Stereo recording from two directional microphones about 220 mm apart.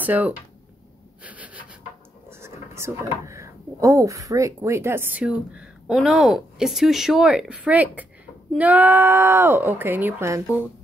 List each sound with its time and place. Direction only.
0.0 s speech: 10° right (ahead or behind)
1.2 s a sound: 5° right (ahead or behind)
2.4 s speech: 10° right (ahead or behind)